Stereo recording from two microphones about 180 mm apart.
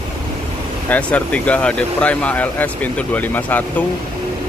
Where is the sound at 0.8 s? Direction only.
10° left (ahead or behind).